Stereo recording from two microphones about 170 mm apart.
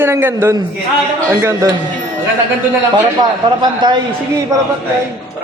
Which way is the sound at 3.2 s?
25° right (ahead or behind).